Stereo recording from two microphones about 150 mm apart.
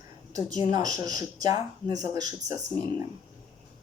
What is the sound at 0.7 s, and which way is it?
Speech, 25° right (ahead or behind).